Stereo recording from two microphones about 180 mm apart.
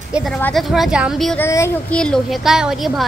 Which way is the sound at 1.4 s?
15° left (ahead or behind).